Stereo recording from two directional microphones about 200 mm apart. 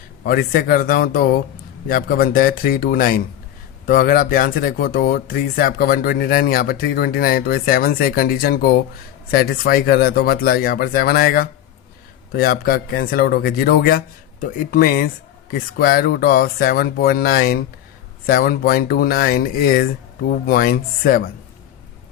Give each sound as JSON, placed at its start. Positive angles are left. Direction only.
{"t": 0.3, "sound": "speech", "side_deg": 50}